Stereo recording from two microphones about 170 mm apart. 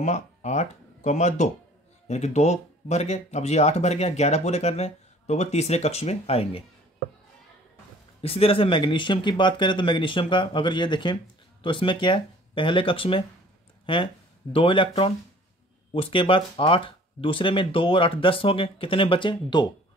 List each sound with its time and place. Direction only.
0.0 s speech: 45° left (ahead or behind)
8.2 s speech: 35° left (ahead or behind)